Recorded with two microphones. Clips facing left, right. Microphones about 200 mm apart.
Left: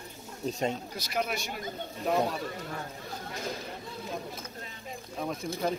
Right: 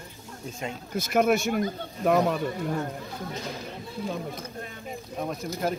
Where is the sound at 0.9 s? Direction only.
50° right (ahead or behind).